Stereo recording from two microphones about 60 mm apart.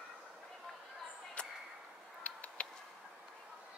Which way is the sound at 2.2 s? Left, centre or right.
Left.